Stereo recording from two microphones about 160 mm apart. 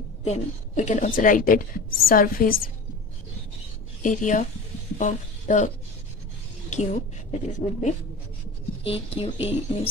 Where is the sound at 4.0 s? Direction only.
55° left (ahead or behind).